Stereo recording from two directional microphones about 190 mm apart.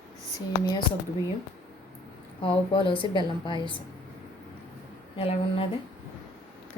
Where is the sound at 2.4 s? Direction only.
25° left (ahead or behind).